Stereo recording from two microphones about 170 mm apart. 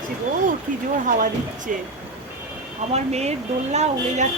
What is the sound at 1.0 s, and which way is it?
Speech, 50° right (ahead or behind).